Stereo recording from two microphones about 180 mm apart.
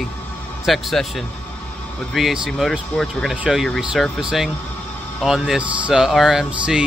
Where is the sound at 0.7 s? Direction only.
Centre (ahead or behind).